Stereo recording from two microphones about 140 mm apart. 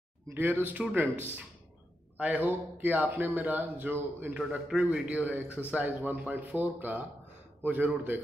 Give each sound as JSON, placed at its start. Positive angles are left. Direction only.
{"t": 0.3, "sound": "speech", "side_deg": -15}